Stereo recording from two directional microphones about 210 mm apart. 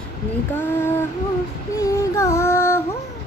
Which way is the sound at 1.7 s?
15° left (ahead or behind).